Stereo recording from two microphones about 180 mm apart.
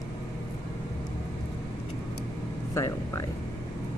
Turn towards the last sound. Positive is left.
turn(degrees=15)  # may be behind; listen again after turning